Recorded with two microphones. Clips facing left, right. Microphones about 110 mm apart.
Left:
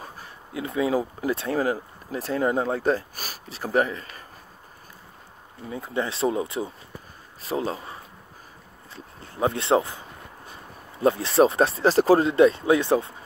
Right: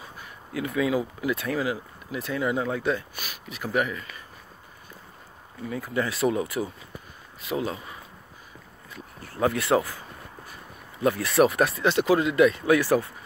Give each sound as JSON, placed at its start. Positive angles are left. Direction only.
{"t": 0.5, "sound": "speech", "side_deg": 25}
{"t": 5.7, "sound": "speech", "side_deg": 25}